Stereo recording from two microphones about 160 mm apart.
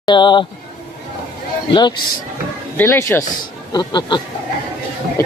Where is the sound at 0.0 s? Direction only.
30° left (ahead or behind).